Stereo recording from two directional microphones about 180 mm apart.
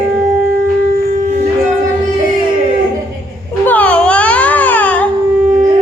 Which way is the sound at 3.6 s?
10° left (ahead or behind).